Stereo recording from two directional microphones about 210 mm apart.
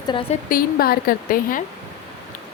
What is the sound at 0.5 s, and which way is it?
A woman's voice, 45° left (ahead or behind).